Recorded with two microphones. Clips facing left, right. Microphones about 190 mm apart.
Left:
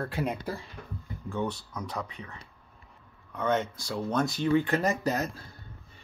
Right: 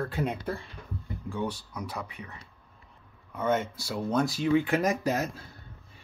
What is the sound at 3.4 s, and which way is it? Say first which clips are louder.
Speech: even; 5° right (ahead or behind).